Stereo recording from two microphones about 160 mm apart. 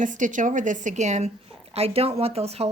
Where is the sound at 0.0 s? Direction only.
50° right (ahead or behind).